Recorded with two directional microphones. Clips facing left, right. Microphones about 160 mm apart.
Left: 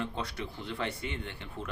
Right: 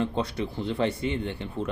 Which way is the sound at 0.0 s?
25° right (ahead or behind).